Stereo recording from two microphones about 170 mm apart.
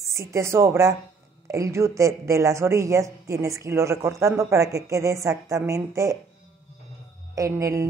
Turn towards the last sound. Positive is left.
turn(degrees=-20)  # may be behind; listen again after turning